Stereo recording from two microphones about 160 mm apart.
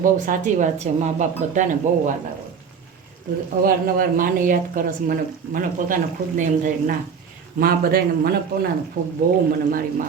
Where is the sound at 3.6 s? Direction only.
60° right (ahead or behind).